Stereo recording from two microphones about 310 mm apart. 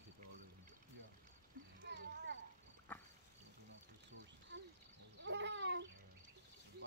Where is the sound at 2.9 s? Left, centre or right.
Centre.